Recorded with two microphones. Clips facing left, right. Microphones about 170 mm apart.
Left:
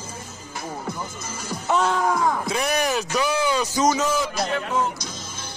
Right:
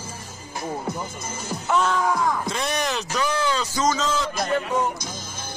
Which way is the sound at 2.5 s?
10° left (ahead or behind).